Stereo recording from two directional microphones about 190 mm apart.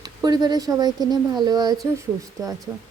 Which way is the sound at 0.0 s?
20° right (ahead or behind).